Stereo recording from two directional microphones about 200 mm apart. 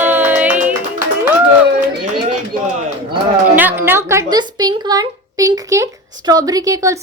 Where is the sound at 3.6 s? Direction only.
10° right (ahead or behind).